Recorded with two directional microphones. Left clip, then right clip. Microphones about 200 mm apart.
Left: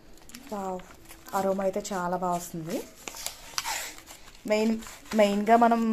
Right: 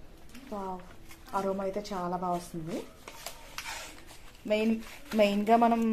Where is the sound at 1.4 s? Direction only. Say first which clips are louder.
Left 5 dB; 40° left (ahead or behind).